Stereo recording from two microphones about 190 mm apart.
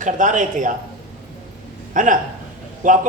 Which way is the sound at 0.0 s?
40° right (ahead or behind).